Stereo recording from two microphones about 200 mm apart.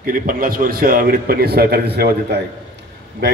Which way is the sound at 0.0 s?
45° right (ahead or behind).